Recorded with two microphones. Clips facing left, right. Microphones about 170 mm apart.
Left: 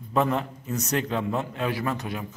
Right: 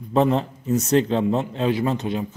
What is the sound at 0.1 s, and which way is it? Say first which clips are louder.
A man's voice: right 5 dB; 30° right (ahead or behind).